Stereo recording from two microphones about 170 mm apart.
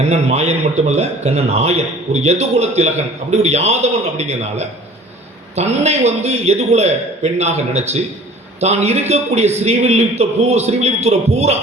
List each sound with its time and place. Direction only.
0.1 s a man's voice: 40° right (ahead or behind)